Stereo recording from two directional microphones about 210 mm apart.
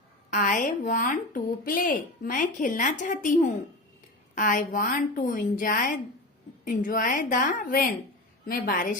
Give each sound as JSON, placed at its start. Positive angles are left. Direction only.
{"t": 0.3, "sound": "a woman's voice", "side_deg": 40}